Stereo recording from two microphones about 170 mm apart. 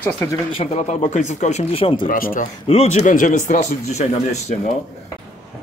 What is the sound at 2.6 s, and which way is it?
Speech, 40° left (ahead or behind).